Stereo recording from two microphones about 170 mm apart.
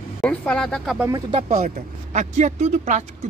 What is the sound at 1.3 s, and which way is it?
Speech, 35° right (ahead or behind).